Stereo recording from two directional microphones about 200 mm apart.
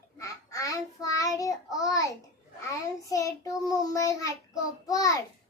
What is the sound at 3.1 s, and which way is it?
A child's voice, 15° left (ahead or behind).